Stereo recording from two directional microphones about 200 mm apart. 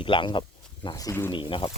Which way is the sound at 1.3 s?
25° left (ahead or behind).